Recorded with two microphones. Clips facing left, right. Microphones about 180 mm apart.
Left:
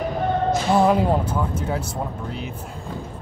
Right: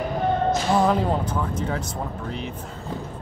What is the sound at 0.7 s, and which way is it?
Speech, 10° left (ahead or behind).